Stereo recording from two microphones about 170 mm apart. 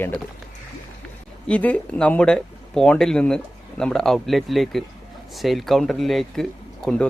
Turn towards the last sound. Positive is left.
turn(degrees=0)  # may be behind; listen again after turning